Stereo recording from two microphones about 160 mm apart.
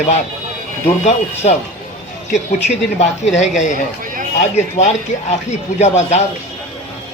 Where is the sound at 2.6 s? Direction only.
45° left (ahead or behind).